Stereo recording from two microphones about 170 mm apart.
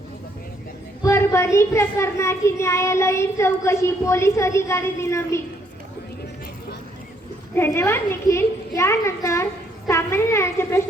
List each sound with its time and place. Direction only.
1.0 s a child's voice: 15° left (ahead or behind)
7.5 s a child's voice: 15° left (ahead or behind)